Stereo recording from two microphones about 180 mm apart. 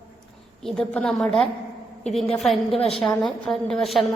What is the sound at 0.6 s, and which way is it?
A woman's voice, 5° left (ahead or behind).